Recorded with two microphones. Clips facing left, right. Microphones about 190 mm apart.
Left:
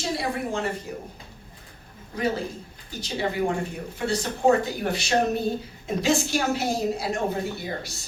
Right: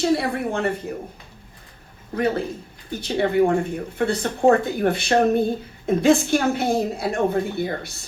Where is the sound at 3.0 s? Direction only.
55° right (ahead or behind).